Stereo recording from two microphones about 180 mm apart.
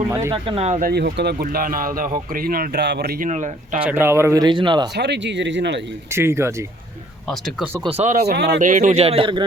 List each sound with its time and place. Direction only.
0.1 s speech: 15° right (ahead or behind)
0.4 s a man's voice: 35° right (ahead or behind)
0.8 s speech: 55° right (ahead or behind)
3.2 s a man's voice: 40° right (ahead or behind)
3.8 s speech: 10° right (ahead or behind)
4.9 s speech: 70° right (ahead or behind)
6.1 s speech: 15° right (ahead or behind)
7.9 s a man's voice: 35° right (ahead or behind)
8.2 s speech: 65° right (ahead or behind)
8.6 s a man's voice: 45° right (ahead or behind)